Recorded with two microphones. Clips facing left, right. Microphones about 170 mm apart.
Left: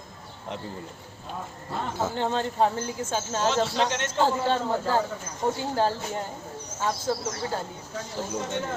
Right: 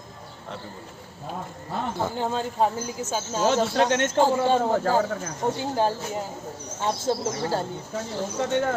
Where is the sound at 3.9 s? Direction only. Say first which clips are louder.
Right 4 dB; 50° right (ahead or behind).